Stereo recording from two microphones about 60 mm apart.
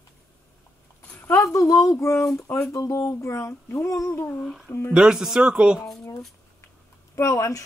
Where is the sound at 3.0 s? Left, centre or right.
Left.